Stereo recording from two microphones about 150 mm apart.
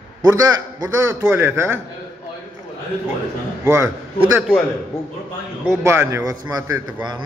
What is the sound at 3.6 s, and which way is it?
Speech, 15° right (ahead or behind).